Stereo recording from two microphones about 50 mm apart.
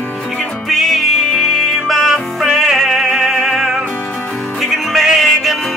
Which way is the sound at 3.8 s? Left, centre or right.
Left.